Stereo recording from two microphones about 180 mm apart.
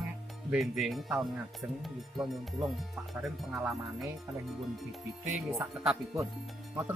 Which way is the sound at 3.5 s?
Centre (ahead or behind).